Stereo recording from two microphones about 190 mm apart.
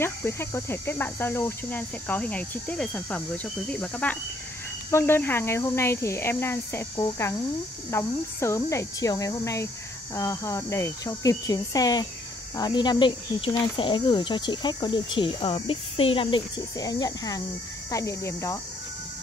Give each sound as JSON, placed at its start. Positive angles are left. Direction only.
{"t": 0.0, "sound": "cricket", "side_deg": 10}
{"t": 12.5, "sound": "speech", "side_deg": 20}
{"t": 17.9, "sound": "cricket", "side_deg": 15}